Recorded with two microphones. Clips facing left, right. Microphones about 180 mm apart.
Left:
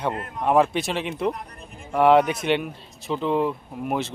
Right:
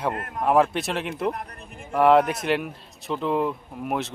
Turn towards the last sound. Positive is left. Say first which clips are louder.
# left 1 dB
turn(degrees=0)  # may be behind; listen again after turning